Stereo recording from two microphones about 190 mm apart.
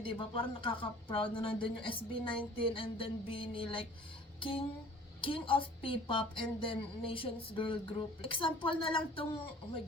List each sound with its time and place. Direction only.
0.0 s a woman's voice: 25° left (ahead or behind)